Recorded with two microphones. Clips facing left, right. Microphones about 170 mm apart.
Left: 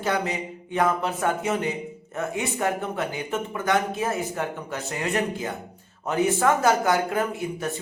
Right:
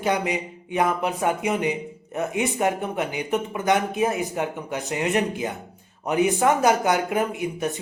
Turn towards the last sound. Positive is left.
turn(degrees=-15)  # may be behind; listen again after turning